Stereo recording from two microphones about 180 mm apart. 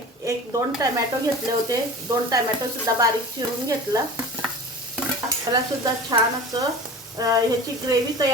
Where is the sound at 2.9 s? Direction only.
20° right (ahead or behind).